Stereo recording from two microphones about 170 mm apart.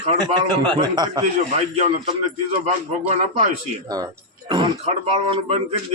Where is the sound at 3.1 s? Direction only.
40° right (ahead or behind).